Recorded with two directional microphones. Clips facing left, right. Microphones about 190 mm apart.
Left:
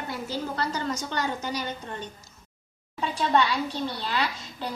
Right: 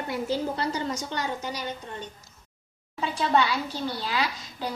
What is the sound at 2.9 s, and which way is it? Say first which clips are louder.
Speech: even; 5° right (ahead or behind).